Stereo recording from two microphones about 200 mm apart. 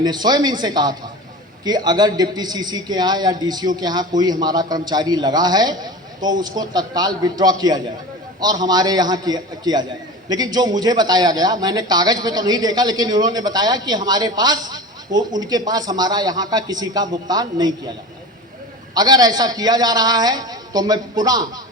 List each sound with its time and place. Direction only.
0.0 s speech: 20° right (ahead or behind)
18.9 s speech: 20° right (ahead or behind)